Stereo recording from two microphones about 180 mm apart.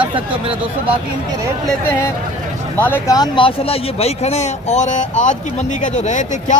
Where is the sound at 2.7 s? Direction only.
10° left (ahead or behind); by 6.6 s 45° left (ahead or behind).